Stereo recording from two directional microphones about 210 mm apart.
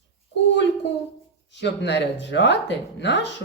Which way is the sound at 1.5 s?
55° left (ahead or behind).